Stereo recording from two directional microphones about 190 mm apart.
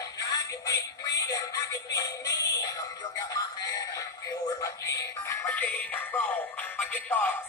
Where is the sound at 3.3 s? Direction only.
20° left (ahead or behind).